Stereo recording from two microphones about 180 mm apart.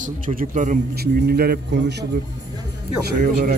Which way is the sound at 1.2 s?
60° right (ahead or behind).